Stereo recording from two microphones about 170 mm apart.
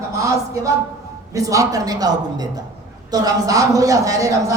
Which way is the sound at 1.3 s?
20° right (ahead or behind).